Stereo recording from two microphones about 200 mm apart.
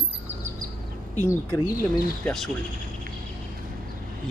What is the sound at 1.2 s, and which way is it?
Speech, 15° left (ahead or behind).